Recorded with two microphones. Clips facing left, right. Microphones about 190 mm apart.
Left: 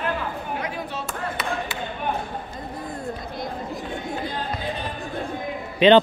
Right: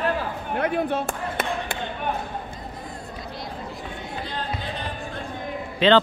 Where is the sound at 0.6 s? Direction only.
55° right (ahead or behind).